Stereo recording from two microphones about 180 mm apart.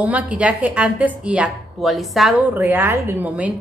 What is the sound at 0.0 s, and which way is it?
A woman's voice, 10° right (ahead or behind).